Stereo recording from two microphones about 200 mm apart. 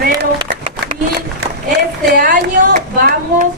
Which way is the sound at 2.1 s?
50° right (ahead or behind).